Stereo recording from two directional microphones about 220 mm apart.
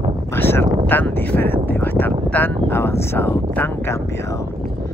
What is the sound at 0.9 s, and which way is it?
Speech, 10° left (ahead or behind).